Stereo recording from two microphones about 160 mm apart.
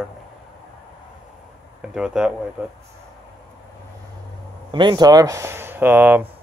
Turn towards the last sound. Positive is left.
turn(degrees=-10)  # may be behind; listen again after turning